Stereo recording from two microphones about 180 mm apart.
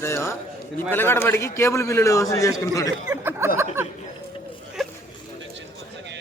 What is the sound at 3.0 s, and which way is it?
Speech, 15° right (ahead or behind).